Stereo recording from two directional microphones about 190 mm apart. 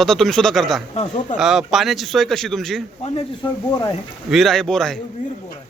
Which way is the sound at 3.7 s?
20° left (ahead or behind).